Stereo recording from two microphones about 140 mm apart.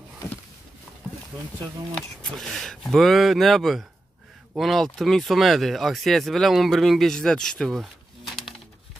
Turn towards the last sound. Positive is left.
turn(degrees=0)  # may be behind; listen again after turning